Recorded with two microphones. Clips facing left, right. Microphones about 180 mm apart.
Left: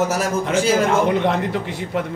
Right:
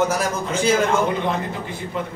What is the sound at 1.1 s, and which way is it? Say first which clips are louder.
Speech: left 4 dB; 70° left (ahead or behind).